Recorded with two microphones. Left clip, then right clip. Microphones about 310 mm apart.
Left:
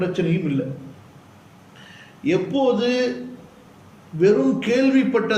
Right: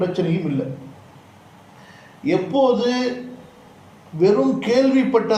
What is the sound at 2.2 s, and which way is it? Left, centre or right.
Speech, centre.